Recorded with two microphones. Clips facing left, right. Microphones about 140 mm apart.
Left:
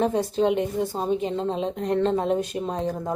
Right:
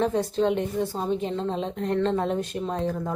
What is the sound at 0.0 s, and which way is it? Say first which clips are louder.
Speech: left 1 dB; 15° left (ahead or behind).